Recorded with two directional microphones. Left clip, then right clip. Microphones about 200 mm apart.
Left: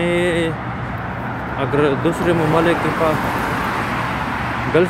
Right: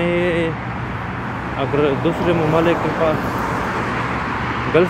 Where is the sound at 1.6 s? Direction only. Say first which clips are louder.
Left 1 dB; 10° left (ahead or behind).